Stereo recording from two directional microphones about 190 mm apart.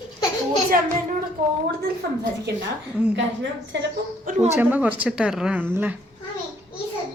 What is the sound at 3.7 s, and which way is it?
Speech, 75° right (ahead or behind).